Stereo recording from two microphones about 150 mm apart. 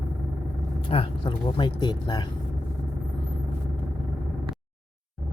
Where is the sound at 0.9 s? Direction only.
35° left (ahead or behind).